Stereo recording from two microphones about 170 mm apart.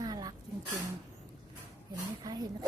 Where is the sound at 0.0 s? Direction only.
25° right (ahead or behind).